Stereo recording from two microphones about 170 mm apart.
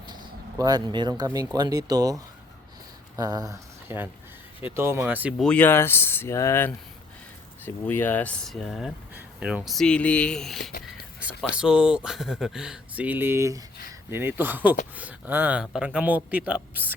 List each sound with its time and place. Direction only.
0.0 s a man's voice: 25° right (ahead or behind); by 5.5 s 10° right (ahead or behind)
5.5 s a man's voice: 10° left (ahead or behind); by 16.9 s 10° right (ahead or behind)